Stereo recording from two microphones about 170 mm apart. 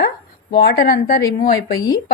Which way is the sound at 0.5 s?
65° left (ahead or behind).